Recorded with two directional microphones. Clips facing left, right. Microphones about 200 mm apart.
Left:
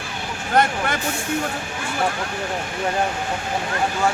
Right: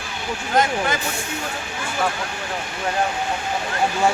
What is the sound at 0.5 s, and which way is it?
Speech, 60° left (ahead or behind).